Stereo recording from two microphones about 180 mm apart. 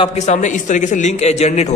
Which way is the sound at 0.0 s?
40° left (ahead or behind).